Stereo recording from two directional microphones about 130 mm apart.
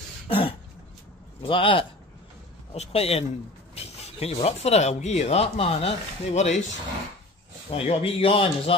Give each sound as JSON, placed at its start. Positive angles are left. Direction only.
{"t": 0.3, "sound": "speech", "side_deg": 45}
{"t": 2.7, "sound": "speech", "side_deg": 55}
{"t": 7.7, "sound": "speech", "side_deg": 50}